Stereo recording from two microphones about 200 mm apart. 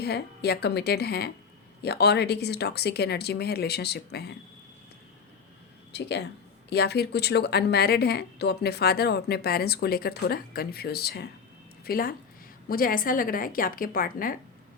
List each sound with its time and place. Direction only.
0.0 s a woman's voice: 55° left (ahead or behind)
5.9 s a woman's voice: 60° left (ahead or behind)